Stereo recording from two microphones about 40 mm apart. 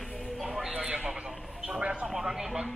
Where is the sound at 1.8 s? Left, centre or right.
Right.